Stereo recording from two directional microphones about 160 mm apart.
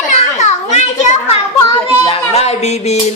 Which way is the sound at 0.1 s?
45° left (ahead or behind).